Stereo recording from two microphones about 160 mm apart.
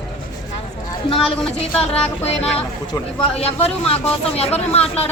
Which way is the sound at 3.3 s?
40° left (ahead or behind).